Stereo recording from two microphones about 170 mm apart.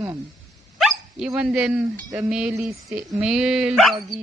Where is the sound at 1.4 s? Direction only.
5° right (ahead or behind).